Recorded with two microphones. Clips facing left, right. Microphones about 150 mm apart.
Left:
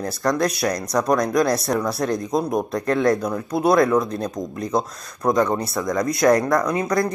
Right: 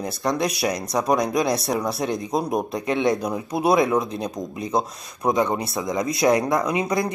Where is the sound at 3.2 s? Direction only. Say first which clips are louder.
Left 2 dB; 20° right (ahead or behind).